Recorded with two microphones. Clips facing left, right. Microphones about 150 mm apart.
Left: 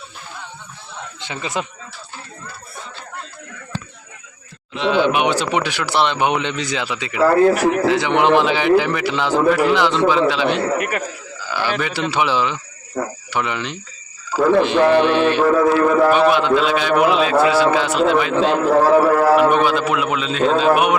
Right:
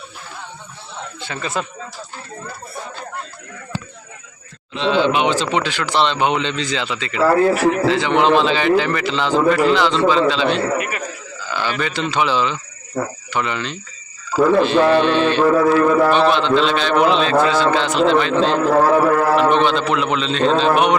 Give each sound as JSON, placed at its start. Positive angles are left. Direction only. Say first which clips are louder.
{"t": 1.2, "sound": "speech", "louder": "even", "side_deg": 15}
{"t": 4.7, "sound": "a man's voice", "louder": "even", "side_deg": 10}
{"t": 10.8, "sound": "a man's voice", "louder": "left 2 dB", "side_deg": 55}
{"t": 11.3, "sound": "a man's voice", "louder": "left 1 dB", "side_deg": 10}
{"t": 15.4, "sound": "a sound", "louder": "right 1 dB", "side_deg": 0}
{"t": 16.0, "sound": "a man's voice", "louder": "left 1 dB", "side_deg": 10}